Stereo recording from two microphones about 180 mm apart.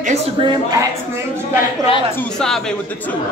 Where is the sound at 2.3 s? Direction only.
5° left (ahead or behind).